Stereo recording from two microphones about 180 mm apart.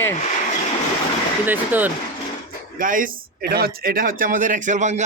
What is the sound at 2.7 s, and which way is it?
Speech, 50° right (ahead or behind).